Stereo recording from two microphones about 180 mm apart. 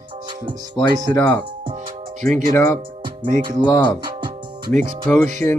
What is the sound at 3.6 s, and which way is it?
Speech, 25° left (ahead or behind).